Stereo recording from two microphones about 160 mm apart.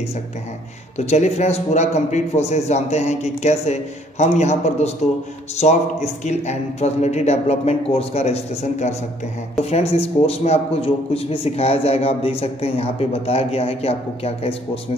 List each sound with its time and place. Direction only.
0.9 s a man's voice: 45° left (ahead or behind)